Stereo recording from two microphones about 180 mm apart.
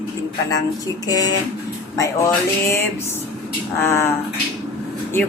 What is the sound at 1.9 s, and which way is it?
Speech, 20° left (ahead or behind).